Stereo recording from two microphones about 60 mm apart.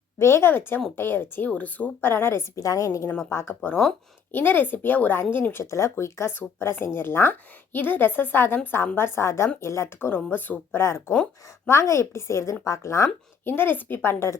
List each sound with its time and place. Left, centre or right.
0.2 s a woman's voice: left
2.6 s a woman's voice: left
3.2 s speech: left
4.3 s a woman's voice: left
5.7 s a woman's voice: left
6.3 s a woman's voice: left
10.0 s a woman's voice: left
10.8 s a woman's voice: left
13.4 s a woman's voice: left